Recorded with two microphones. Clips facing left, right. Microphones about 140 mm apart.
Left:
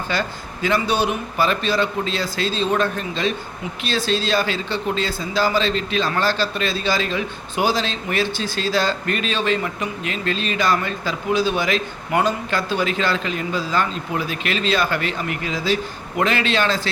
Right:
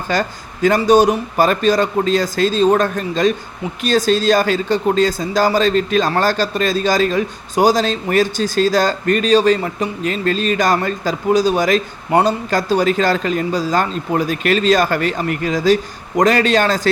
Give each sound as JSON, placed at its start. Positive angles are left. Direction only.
{"t": 0.1, "sound": "speech", "side_deg": -45}